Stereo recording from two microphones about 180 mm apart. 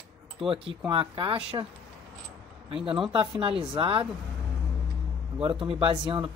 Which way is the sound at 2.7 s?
30° right (ahead or behind).